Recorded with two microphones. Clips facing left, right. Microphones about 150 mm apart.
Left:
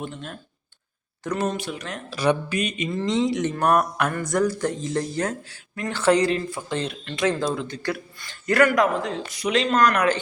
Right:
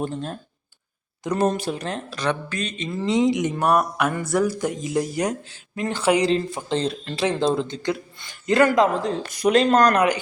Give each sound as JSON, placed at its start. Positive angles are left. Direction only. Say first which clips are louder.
{"t": 0.0, "sound": "speech", "louder": "right 6 dB", "side_deg": -35}
{"t": 1.4, "sound": "speech", "louder": "right 6 dB", "side_deg": -35}
{"t": 2.0, "sound": "speech", "louder": "left 7 dB", "side_deg": 10}
{"t": 2.9, "sound": "speech", "louder": "right 4 dB", "side_deg": -10}
{"t": 3.6, "sound": "mantra", "louder": "left 1 dB", "side_deg": -5}
{"t": 4.1, "sound": "speech", "louder": "right 1 dB", "side_deg": -5}
{"t": 6.2, "sound": "speech", "louder": "right 2 dB", "side_deg": -25}
{"t": 9.1, "sound": "speech", "louder": "right 5 dB", "side_deg": -45}